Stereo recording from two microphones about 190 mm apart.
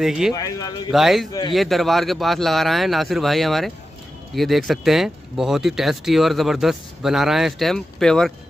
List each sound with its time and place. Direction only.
0.0 s speech: 5° right (ahead or behind)
0.3 s speech: 20° left (ahead or behind)
0.9 s speech: centre (ahead or behind)